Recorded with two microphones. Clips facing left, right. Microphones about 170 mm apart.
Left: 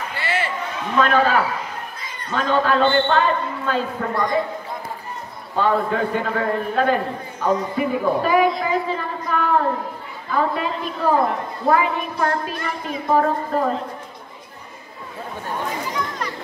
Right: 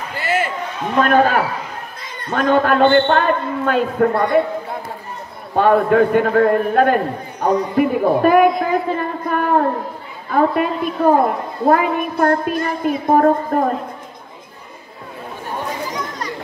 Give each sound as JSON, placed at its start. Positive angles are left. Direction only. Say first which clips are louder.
{"t": 0.2, "sound": "a sound", "louder": "right 5 dB", "side_deg": -45}
{"t": 0.9, "sound": "a woman's voice", "louder": "right 3 dB", "side_deg": -50}
{"t": 5.6, "sound": "a man's voice", "louder": "right 7 dB", "side_deg": -60}